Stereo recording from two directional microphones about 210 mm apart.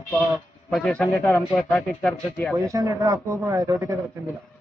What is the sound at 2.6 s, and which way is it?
Speech, 15° right (ahead or behind).